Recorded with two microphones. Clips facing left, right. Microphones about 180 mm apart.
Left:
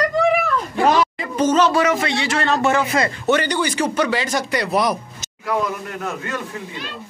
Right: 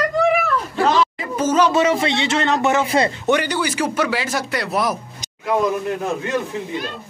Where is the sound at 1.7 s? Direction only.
25° right (ahead or behind); by 4.9 s centre (ahead or behind).